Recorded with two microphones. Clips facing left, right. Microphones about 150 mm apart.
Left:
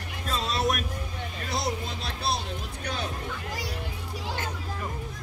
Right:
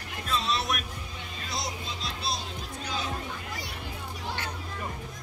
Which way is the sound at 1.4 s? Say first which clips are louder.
Left 5 dB; 55° left (ahead or behind).